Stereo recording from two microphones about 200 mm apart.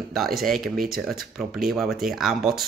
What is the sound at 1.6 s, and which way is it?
Speech, centre (ahead or behind).